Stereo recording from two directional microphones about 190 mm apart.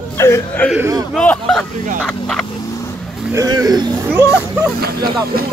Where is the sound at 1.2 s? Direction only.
5° left (ahead or behind).